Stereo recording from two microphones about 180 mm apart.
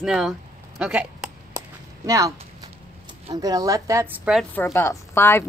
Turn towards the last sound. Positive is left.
turn(degrees=15)  # may be behind; listen again after turning